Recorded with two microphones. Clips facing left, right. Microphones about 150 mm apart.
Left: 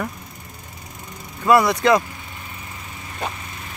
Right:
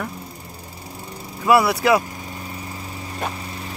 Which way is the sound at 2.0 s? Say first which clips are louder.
Right 4 dB; 40° right (ahead or behind).